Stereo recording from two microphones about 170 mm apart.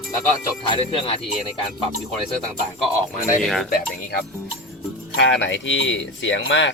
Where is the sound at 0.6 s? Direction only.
30° left (ahead or behind).